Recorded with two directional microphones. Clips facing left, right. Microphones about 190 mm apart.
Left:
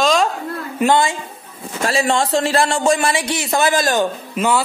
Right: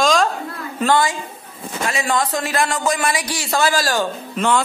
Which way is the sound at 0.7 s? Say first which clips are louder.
Left 2 dB; 20° left (ahead or behind).